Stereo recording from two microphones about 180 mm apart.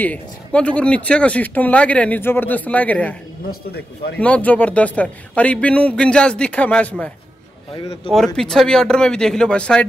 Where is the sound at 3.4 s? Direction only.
60° left (ahead or behind).